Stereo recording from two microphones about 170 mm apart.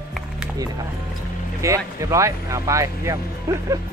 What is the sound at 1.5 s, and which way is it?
Speech, 20° right (ahead or behind).